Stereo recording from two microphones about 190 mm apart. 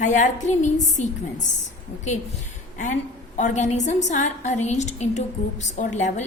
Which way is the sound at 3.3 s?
40° left (ahead or behind).